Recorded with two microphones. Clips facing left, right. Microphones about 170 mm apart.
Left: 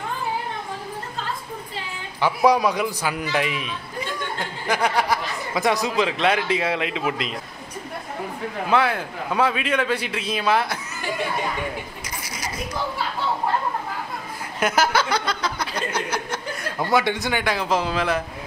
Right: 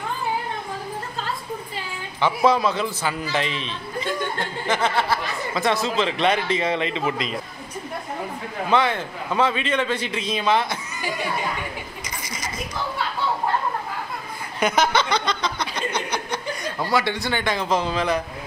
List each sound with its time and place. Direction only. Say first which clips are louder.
2.1 s a man's voice: left 1 dB; 10° left (ahead or behind)
8.6 s a man's voice: even; 5° left (ahead or behind)
12.2 s a sound: even; 10° left (ahead or behind)
14.6 s a sound: even; 5° left (ahead or behind)
16.8 s speech: left 2 dB; 20° left (ahead or behind)
17.4 s a man's voice: even; 5° left (ahead or behind)